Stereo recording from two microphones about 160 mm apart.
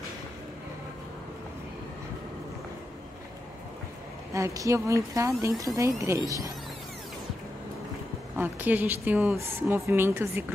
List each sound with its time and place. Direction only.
4.3 s a woman's voice: 20° right (ahead or behind)
8.4 s speech: 10° right (ahead or behind)